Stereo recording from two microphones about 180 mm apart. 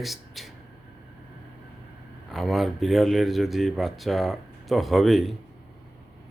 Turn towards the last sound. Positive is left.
turn(degrees=0)  # may be behind; listen again after turning